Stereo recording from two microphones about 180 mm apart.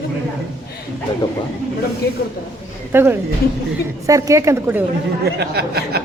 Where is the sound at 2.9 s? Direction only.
10° right (ahead or behind).